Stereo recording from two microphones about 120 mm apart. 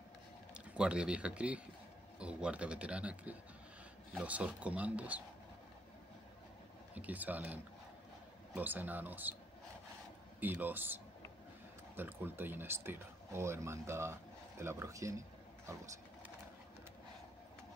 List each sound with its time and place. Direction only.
0.7 s speech: 10° right (ahead or behind)
7.0 s speech: 15° right (ahead or behind)
10.4 s speech: 15° right (ahead or behind)